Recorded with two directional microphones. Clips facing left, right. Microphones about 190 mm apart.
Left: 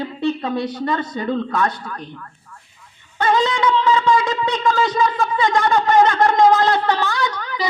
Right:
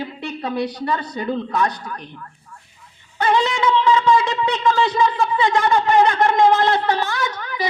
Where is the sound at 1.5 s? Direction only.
15° right (ahead or behind).